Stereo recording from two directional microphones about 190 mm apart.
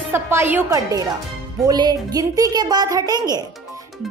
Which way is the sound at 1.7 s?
20° right (ahead or behind).